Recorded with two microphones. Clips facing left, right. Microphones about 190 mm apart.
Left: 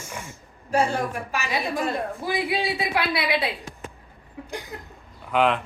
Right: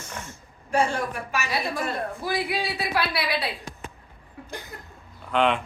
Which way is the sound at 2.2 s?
20° left (ahead or behind).